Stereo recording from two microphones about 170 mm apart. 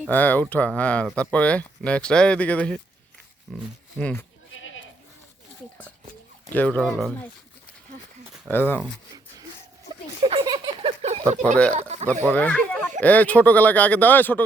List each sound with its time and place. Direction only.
0.1 s speech: 10° left (ahead or behind)
6.5 s speech: 10° left (ahead or behind)
8.4 s speech: 10° left (ahead or behind)
10.2 s a sound: 25° right (ahead or behind)
11.0 s a sound: 40° right (ahead or behind)
11.7 s speech: 40° right (ahead or behind)
12.2 s speech: 10° left (ahead or behind)